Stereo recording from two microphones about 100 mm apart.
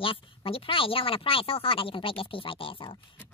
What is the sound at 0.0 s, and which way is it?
Speech, 60° left (ahead or behind).